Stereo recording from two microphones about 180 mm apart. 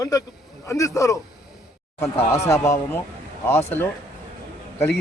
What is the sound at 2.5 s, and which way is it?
A man's voice, 15° left (ahead or behind).